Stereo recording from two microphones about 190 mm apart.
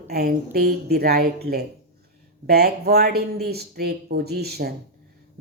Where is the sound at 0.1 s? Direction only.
55° right (ahead or behind).